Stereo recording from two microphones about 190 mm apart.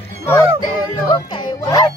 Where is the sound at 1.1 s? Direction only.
20° left (ahead or behind).